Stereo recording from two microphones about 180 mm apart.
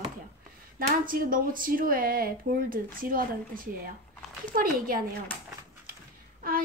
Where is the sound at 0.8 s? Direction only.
50° right (ahead or behind).